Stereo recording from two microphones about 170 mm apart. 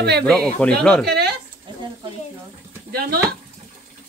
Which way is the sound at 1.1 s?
75° right (ahead or behind).